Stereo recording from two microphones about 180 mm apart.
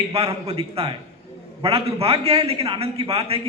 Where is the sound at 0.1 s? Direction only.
35° right (ahead or behind).